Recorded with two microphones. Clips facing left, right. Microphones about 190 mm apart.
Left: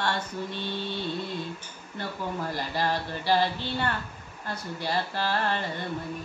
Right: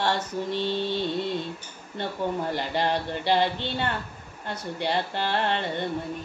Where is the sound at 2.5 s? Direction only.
20° right (ahead or behind).